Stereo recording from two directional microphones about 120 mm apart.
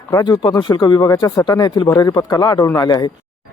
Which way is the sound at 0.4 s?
40° left (ahead or behind).